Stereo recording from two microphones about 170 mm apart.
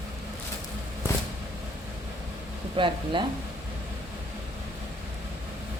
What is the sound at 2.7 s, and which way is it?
Speech, 30° right (ahead or behind).